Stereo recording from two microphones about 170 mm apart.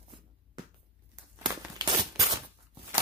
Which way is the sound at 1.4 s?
25° right (ahead or behind).